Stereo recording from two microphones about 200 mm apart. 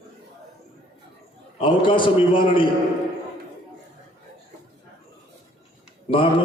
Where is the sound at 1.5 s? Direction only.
25° left (ahead or behind).